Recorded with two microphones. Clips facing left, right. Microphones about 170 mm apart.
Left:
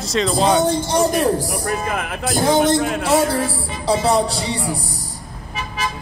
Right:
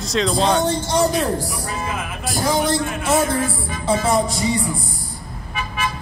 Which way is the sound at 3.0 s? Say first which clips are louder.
Left 2 dB; 35° left (ahead or behind).